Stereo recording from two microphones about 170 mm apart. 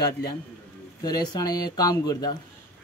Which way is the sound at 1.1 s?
25° left (ahead or behind).